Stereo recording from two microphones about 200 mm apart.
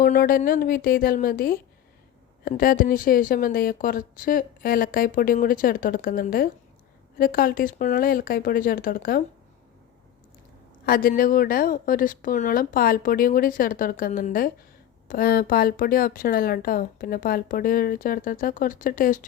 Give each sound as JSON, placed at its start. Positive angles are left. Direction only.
{"t": 0.0, "sound": "speech", "side_deg": 45}
{"t": 10.8, "sound": "speech", "side_deg": 45}